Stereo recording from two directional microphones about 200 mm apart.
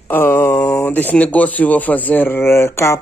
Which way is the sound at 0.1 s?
10° left (ahead or behind).